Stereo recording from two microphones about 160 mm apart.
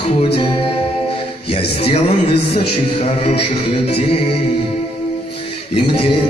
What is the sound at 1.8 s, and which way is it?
A man's voice, 35° left (ahead or behind).